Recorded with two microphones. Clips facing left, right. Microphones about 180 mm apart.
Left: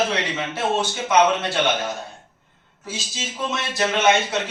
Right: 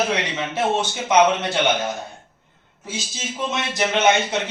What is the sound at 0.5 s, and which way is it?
A man's voice, 20° right (ahead or behind).